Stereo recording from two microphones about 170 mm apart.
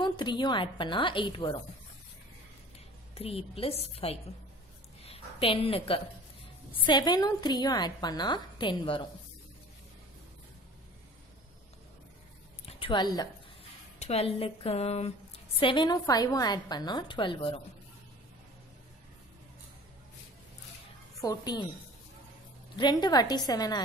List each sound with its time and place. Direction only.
0.0 s a woman's voice: 25° left (ahead or behind)
3.2 s a woman's voice: 35° left (ahead or behind)
12.6 s a woman's voice: 30° left (ahead or behind)
13.9 s a woman's voice: 40° left (ahead or behind)
21.2 s a woman's voice: 20° left (ahead or behind)
22.8 s a woman's voice: 25° left (ahead or behind)